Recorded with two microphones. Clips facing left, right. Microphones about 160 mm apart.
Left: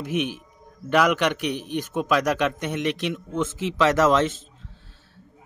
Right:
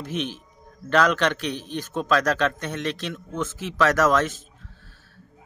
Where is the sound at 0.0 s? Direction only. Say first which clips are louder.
Left 3 dB; 15° left (ahead or behind).